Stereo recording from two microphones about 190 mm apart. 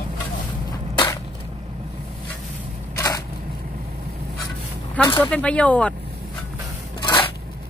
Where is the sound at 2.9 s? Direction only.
15° left (ahead or behind).